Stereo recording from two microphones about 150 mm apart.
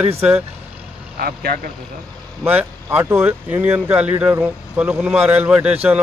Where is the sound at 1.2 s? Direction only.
90° right.